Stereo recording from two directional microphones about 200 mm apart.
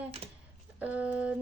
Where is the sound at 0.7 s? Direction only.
5° right (ahead or behind).